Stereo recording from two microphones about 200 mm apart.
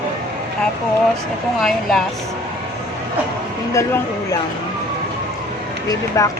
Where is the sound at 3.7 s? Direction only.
15° left (ahead or behind).